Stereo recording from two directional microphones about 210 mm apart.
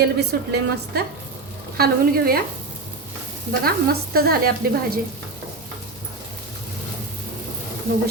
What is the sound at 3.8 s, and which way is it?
A woman's voice, 45° right (ahead or behind).